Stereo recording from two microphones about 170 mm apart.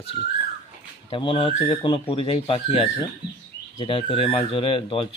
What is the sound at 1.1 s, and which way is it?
Speech, 30° left (ahead or behind).